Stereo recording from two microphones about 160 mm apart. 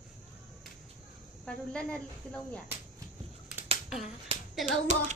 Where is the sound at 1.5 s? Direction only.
5° left (ahead or behind).